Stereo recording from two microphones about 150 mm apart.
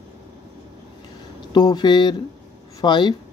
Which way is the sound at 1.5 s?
30° left (ahead or behind).